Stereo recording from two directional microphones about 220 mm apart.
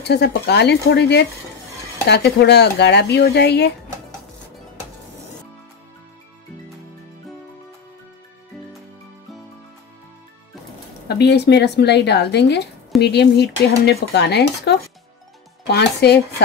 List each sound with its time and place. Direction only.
0.0 s speech: 50° left (ahead or behind)
11.1 s speech: 50° left (ahead or behind)